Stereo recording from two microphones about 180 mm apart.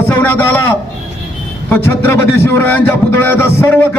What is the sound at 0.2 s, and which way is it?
Speech, 10° left (ahead or behind).